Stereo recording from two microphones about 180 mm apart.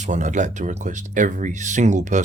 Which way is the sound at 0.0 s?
45° right (ahead or behind).